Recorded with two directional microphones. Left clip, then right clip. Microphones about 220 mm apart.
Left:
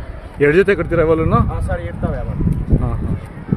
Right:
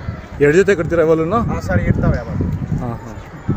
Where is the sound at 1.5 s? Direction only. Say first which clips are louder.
Right 5 dB; 15° right (ahead or behind).